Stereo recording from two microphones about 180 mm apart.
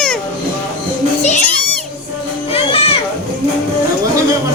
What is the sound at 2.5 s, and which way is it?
Music, 35° left (ahead or behind).